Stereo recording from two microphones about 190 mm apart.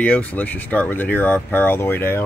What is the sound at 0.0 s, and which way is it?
Speech, 5° left (ahead or behind).